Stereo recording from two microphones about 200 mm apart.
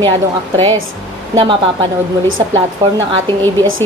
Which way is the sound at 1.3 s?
25° right (ahead or behind).